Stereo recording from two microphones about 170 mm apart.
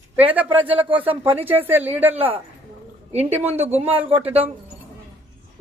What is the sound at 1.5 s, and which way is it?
Speech, 10° right (ahead or behind).